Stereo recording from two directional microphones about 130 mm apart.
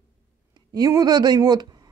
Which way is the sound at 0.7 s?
30° right (ahead or behind).